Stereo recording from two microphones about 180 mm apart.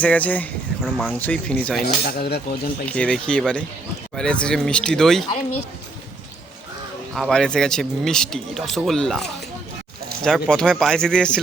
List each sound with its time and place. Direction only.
0.0 s speech: 10° left (ahead or behind)
0.8 s speech: centre (ahead or behind)
1.8 s speech: 60° left (ahead or behind)
2.8 s speech: 5° left (ahead or behind)
7.1 s speech: centre (ahead or behind)